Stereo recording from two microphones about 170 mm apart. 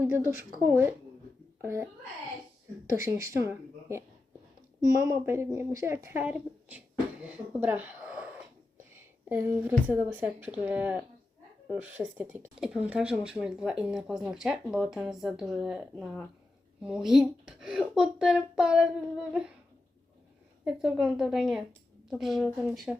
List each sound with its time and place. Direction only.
0.0 s speech: 15° right (ahead or behind)
2.9 s speech: 15° right (ahead or behind)
8.8 s a sound: 15° right (ahead or behind)
10.2 s speech: 10° right (ahead or behind)
20.7 s speech: 5° right (ahead or behind)